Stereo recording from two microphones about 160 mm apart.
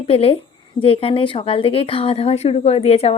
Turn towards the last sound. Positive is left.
turn(degrees=40)  # may be behind; listen again after turning